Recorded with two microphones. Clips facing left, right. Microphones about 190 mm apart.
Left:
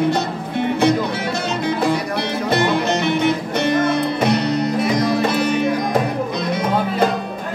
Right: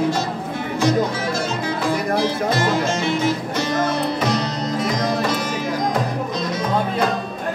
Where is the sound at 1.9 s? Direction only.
65° left (ahead or behind).